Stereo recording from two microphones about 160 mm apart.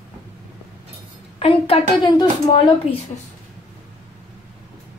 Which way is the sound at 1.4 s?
35° left (ahead or behind).